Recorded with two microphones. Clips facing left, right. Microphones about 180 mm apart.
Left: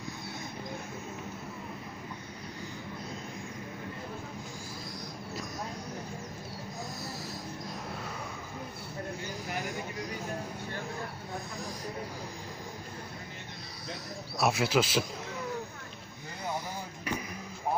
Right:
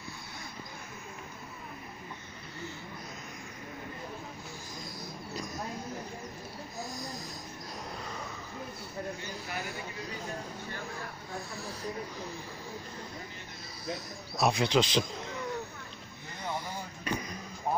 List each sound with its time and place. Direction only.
7.0 s vehicle: 5° left (ahead or behind)
11.5 s speech: 15° left (ahead or behind)
14.3 s speech: 5° left (ahead or behind)
16.4 s vehicle: 10° left (ahead or behind)